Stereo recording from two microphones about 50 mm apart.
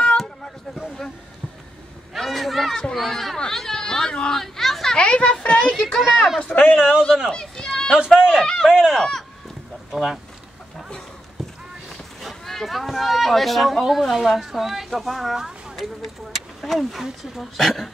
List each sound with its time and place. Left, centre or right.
0.7 s a sound: centre
2.1 s a sound: centre
2.7 s speech: centre
4.9 s speech: left
5.9 s speech: centre
6.5 s speech: left
7.2 s run: centre
8.2 s speech: centre
12.2 s speech: centre